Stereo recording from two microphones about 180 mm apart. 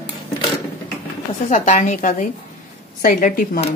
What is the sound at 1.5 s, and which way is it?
Speech, 45° left (ahead or behind).